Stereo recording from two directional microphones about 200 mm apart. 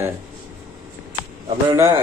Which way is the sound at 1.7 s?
15° right (ahead or behind).